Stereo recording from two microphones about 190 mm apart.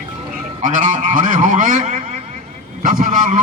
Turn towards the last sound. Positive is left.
turn(degrees=-40)  # may be behind; listen again after turning